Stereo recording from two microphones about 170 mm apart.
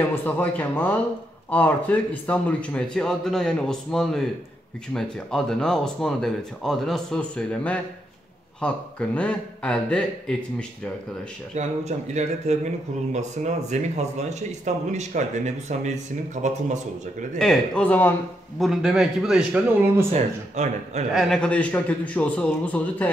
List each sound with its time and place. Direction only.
0.1 s a man's voice: 10° left (ahead or behind)
11.5 s speech: 40° right (ahead or behind)
17.4 s a man's voice: 5° left (ahead or behind)
18.6 s speech: 5° right (ahead or behind)
20.1 s speech: 40° right (ahead or behind)
21.1 s a man's voice: centre (ahead or behind)